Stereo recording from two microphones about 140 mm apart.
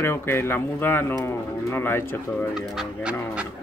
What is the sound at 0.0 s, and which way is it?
Speech, 15° left (ahead or behind).